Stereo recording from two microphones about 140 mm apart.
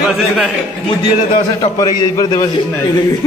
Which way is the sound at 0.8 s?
35° left (ahead or behind).